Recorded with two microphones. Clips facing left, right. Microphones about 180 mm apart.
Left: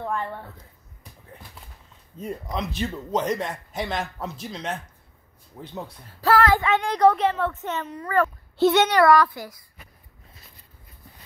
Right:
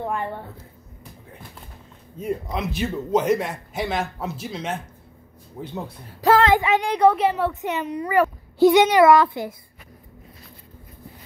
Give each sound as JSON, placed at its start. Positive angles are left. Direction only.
{"t": 0.0, "sound": "speech", "side_deg": -15}
{"t": 2.5, "sound": "a man's voice", "side_deg": -5}
{"t": 6.2, "sound": "speech", "side_deg": -20}